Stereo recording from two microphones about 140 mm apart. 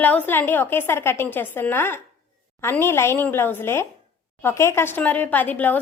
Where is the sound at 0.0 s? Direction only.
10° left (ahead or behind).